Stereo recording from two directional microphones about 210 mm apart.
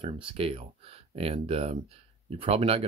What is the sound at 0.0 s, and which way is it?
Speech, 25° right (ahead or behind).